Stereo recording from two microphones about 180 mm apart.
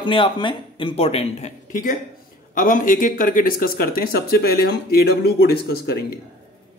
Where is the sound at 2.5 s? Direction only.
50° left (ahead or behind).